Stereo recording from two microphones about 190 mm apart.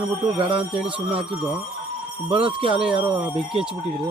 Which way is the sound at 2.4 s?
25° right (ahead or behind).